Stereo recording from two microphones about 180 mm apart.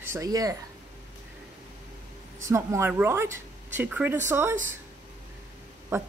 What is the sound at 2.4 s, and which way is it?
Speech, 15° right (ahead or behind).